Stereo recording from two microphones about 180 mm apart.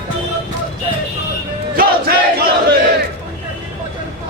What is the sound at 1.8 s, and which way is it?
Battle cry, 60° right (ahead or behind).